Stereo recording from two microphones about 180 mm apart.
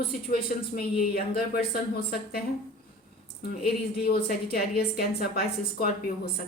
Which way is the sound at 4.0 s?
60° left (ahead or behind).